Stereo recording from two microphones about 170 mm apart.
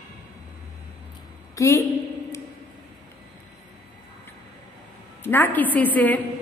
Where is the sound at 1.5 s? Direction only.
15° left (ahead or behind).